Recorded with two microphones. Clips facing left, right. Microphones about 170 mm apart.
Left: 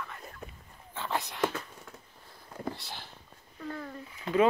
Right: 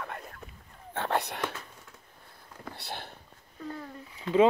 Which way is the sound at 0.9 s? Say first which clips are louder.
Right 4 dB; 65° right (ahead or behind).